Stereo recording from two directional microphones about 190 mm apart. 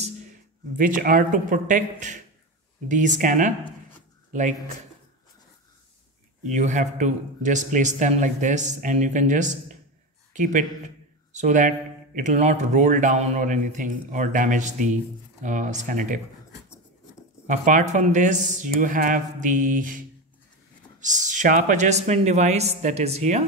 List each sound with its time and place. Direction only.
0.7 s a man's voice: 45° right (ahead or behind)
6.5 s a man's voice: 40° right (ahead or behind)
17.5 s a man's voice: 40° right (ahead or behind)